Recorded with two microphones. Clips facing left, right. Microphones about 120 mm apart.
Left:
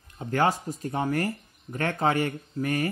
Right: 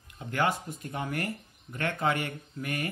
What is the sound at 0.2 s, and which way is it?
Speech, 40° left (ahead or behind).